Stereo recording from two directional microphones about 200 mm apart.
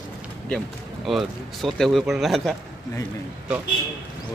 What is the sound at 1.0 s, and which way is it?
A man's voice, centre (ahead or behind).